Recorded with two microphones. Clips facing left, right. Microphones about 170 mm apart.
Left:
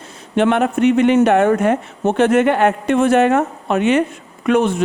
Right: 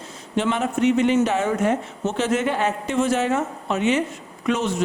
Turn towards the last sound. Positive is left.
turn(degrees=55)  # may be behind; listen again after turning